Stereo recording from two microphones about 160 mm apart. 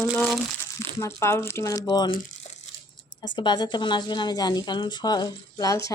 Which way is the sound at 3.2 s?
30° left (ahead or behind).